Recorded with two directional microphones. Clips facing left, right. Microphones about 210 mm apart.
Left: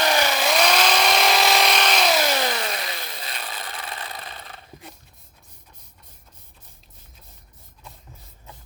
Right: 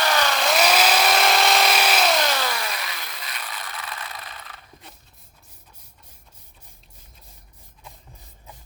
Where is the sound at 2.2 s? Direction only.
20° left (ahead or behind).